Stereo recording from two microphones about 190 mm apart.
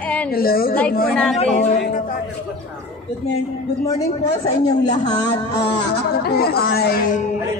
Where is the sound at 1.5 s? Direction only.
40° left (ahead or behind).